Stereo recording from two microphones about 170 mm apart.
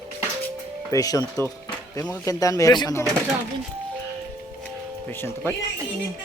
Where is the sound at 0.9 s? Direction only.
20° left (ahead or behind).